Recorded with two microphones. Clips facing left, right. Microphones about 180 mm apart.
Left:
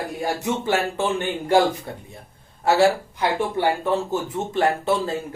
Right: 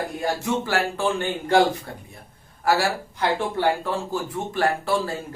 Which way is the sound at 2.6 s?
25° left (ahead or behind).